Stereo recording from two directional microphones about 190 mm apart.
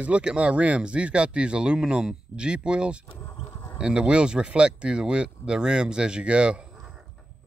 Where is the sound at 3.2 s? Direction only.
10° left (ahead or behind).